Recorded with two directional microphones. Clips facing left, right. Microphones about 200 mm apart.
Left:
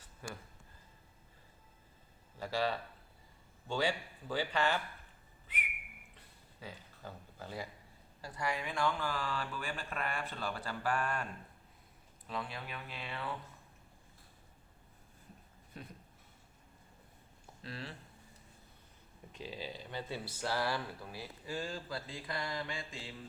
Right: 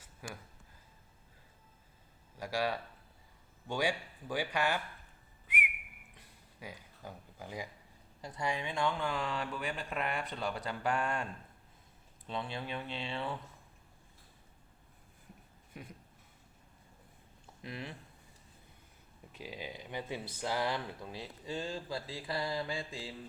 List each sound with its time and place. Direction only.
0.2 s speech: 10° right (ahead or behind)
2.4 s speech: 10° right (ahead or behind)
6.1 s a sound: 10° right (ahead or behind)
8.2 s speech: 20° right (ahead or behind)
10.2 s speech: centre (ahead or behind)
10.5 s speech: 20° right (ahead or behind)
17.6 s speech: 15° right (ahead or behind)
19.3 s speech: 10° right (ahead or behind); by 23.1 s 35° right (ahead or behind)